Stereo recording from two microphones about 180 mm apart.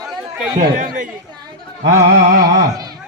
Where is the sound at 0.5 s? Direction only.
45° right (ahead or behind).